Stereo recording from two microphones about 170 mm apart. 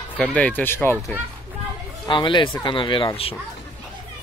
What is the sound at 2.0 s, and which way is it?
Speech, 30° left (ahead or behind).